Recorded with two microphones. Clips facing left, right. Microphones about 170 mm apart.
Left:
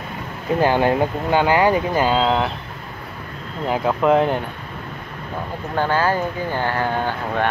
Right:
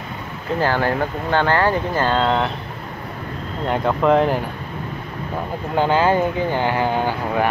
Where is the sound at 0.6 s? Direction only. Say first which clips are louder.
Left 3 dB; 15° left (ahead or behind).